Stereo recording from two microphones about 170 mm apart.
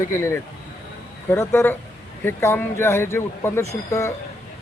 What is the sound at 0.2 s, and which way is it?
Speech, 15° left (ahead or behind).